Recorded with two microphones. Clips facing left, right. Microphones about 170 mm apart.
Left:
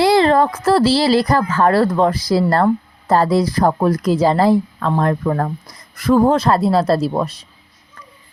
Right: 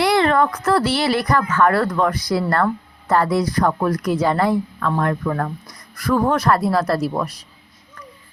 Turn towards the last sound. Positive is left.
turn(degrees=25)  # may be behind; listen again after turning